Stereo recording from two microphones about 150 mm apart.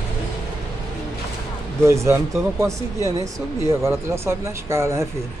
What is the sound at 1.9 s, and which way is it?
Speech, 20° right (ahead or behind).